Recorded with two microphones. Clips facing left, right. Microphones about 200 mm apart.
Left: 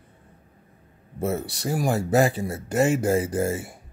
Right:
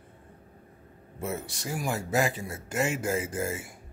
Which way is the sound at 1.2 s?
35° left (ahead or behind).